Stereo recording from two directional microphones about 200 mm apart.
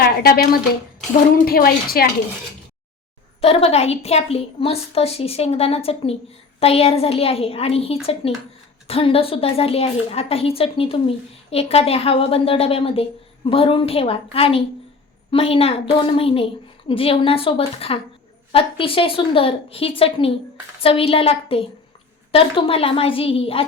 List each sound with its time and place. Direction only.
0.0 s a woman's voice: 50° left (ahead or behind)
3.4 s a woman's voice: 30° left (ahead or behind)